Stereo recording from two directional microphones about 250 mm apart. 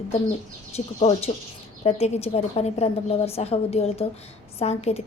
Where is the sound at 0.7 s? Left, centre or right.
Left.